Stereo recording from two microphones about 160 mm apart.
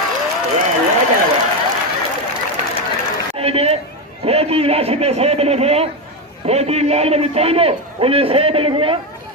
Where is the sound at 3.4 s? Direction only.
40° right (ahead or behind).